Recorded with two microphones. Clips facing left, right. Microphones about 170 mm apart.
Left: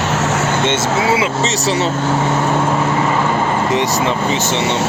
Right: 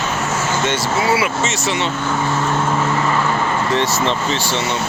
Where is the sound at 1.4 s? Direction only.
35° left (ahead or behind).